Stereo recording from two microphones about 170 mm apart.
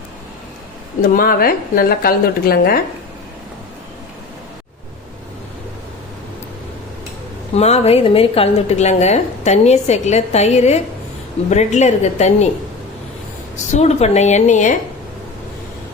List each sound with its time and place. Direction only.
1.0 s a woman's voice: 55° left (ahead or behind)
7.5 s a woman's voice: 40° left (ahead or behind)
13.7 s a woman's voice: 40° left (ahead or behind)